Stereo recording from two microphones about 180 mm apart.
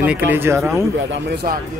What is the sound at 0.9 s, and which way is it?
Speech, 80° right.